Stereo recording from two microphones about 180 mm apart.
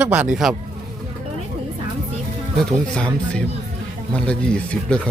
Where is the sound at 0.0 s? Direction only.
5° right (ahead or behind).